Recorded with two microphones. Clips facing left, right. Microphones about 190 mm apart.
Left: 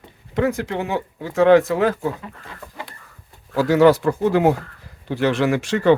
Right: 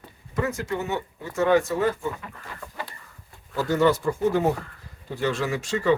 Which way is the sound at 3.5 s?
90° left.